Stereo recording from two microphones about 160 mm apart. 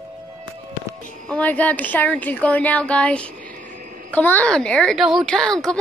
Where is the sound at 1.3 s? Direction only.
10° left (ahead or behind).